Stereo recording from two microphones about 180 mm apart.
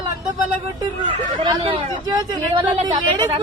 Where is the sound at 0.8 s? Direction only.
25° right (ahead or behind).